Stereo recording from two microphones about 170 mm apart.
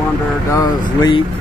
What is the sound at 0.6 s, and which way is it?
Speech, 25° left (ahead or behind).